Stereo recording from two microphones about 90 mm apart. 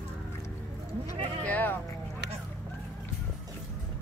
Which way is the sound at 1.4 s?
20° left (ahead or behind).